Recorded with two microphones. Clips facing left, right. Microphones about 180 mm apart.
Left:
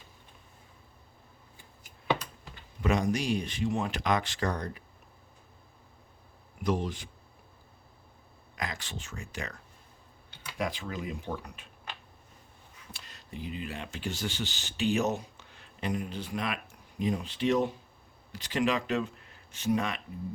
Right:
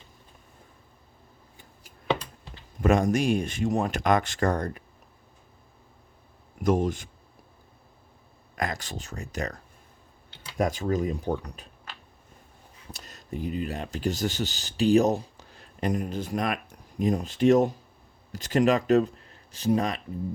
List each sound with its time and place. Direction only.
1.8 s a sound: 30° right (ahead or behind)
2.8 s speech: 50° right (ahead or behind)
6.6 s speech: 45° right (ahead or behind)
8.5 s speech: 45° right (ahead or behind)
10.6 s speech: 45° right (ahead or behind)
12.9 s speech: 45° right (ahead or behind)